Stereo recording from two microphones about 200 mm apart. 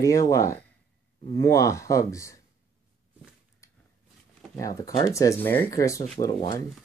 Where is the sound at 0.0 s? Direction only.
15° left (ahead or behind).